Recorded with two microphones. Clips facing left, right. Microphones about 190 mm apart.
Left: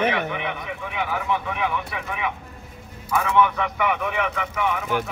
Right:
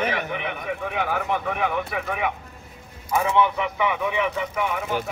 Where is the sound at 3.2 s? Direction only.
30° right (ahead or behind).